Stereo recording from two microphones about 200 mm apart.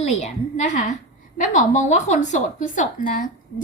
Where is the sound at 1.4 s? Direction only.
35° left (ahead or behind).